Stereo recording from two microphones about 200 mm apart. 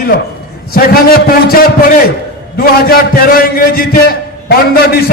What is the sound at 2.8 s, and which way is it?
A man's voice, 50° left (ahead or behind).